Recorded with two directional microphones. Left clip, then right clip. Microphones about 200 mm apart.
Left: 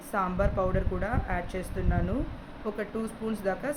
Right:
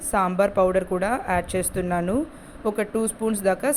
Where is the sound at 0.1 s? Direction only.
45° right (ahead or behind).